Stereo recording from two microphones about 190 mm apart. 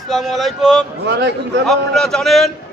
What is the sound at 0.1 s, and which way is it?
Speech, centre (ahead or behind).